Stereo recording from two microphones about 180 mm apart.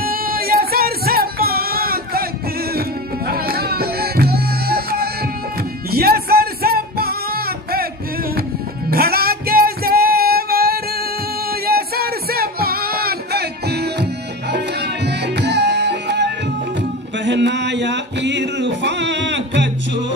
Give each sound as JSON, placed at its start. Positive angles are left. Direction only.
{"t": 0.0, "sound": "music", "side_deg": -55}
{"t": 8.9, "sound": "music", "side_deg": -60}